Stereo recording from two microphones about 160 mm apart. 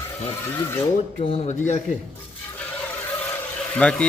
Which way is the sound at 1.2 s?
35° left (ahead or behind).